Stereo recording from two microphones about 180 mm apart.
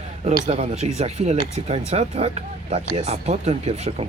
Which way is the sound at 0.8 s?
35° right (ahead or behind).